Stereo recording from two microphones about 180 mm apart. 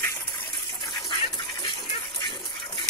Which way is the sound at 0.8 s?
25° left (ahead or behind).